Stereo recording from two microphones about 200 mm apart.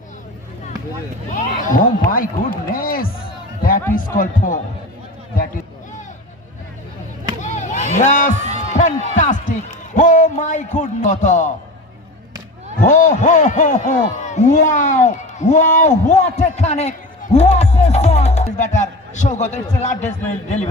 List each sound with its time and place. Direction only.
1.3 s speech: 45° left (ahead or behind)
7.4 s vehicle: 35° left (ahead or behind)
7.9 s a man's voice: 40° left (ahead or behind)
12.8 s a man's voice: 40° left (ahead or behind)